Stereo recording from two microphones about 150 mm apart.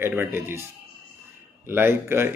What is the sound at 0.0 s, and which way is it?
Speech, 15° right (ahead or behind).